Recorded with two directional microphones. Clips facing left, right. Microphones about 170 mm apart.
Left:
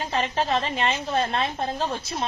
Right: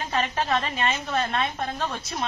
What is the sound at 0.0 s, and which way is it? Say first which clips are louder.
A woman's voice: left 1 dB; 30° left (ahead or behind).